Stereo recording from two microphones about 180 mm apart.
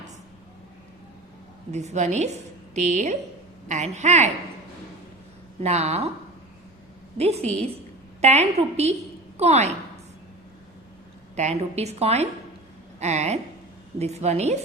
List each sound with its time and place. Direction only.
1.7 s a woman's voice: 40° right (ahead or behind)
5.6 s a woman's voice: 35° right (ahead or behind)
7.2 s a woman's voice: 35° right (ahead or behind)
11.3 s a woman's voice: 40° right (ahead or behind)